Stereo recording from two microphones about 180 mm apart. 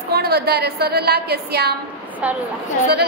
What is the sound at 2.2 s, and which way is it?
Speech, 10° right (ahead or behind).